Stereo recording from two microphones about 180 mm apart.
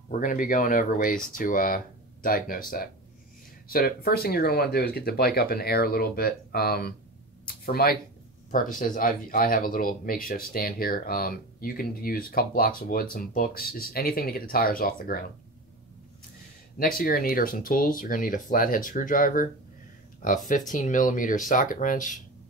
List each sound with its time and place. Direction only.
0.1 s speech: 45° left (ahead or behind)
16.7 s speech: 55° left (ahead or behind)